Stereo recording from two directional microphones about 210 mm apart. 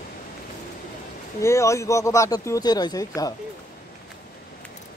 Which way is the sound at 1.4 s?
15° left (ahead or behind).